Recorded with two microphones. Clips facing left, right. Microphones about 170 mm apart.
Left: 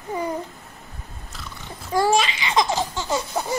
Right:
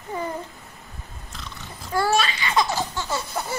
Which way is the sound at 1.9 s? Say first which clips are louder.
Left 3 dB; 15° left (ahead or behind).